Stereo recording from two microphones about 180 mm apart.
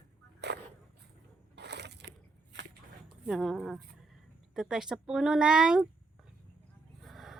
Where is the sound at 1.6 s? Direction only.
70° right (ahead or behind).